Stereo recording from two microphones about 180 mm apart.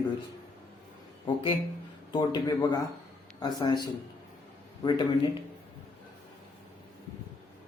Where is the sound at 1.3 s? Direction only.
25° left (ahead or behind).